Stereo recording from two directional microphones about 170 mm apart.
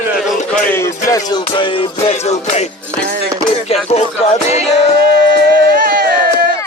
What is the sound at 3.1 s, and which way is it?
Music, 75° right (ahead or behind).